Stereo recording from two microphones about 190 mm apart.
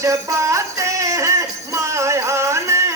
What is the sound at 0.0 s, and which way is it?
Music, 15° right (ahead or behind).